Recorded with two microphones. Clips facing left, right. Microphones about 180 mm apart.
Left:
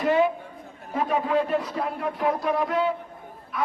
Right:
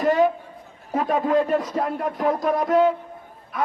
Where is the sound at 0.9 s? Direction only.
45° right (ahead or behind).